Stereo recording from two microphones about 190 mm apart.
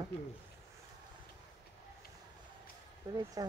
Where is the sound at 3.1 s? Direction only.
25° right (ahead or behind).